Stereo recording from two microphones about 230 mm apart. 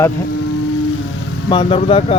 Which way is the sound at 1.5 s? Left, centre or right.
Left.